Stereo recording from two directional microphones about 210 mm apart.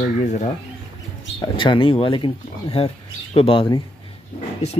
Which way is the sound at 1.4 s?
20° left (ahead or behind).